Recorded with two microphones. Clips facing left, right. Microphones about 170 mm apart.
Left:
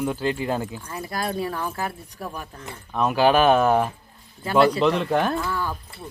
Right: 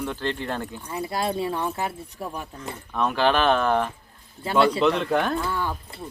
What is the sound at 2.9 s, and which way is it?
Speech, 5° left (ahead or behind).